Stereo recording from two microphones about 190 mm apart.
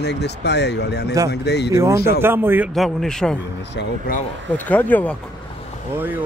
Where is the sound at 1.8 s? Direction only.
15° right (ahead or behind).